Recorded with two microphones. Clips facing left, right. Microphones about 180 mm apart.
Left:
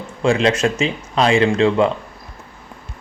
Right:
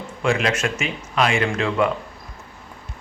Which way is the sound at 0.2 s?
30° left (ahead or behind).